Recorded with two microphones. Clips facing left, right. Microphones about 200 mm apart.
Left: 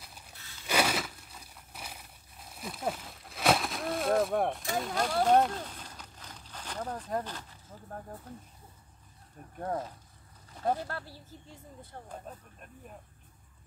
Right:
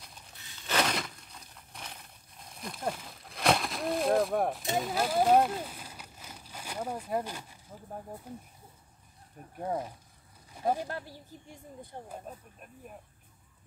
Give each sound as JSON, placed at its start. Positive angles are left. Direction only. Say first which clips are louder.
{"t": 0.7, "sound": "a sound", "louder": "left 1 dB", "side_deg": 10}
{"t": 4.7, "sound": "speech", "louder": "right 2 dB", "side_deg": -5}
{"t": 9.6, "sound": "speech", "louder": "right 1 dB", "side_deg": -10}